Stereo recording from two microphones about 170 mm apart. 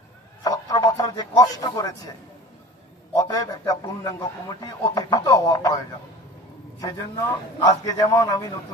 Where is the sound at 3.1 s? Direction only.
20° left (ahead or behind).